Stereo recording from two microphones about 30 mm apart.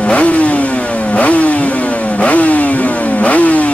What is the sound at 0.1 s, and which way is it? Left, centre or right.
Vehicle, left.